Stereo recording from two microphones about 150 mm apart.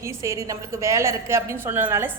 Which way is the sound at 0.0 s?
20° right (ahead or behind).